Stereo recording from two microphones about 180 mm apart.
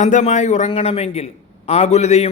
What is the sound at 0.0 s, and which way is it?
Speech, 40° left (ahead or behind).